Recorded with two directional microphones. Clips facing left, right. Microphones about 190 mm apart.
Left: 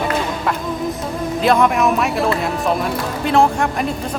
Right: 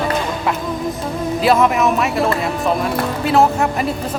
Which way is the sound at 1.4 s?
Centre (ahead or behind).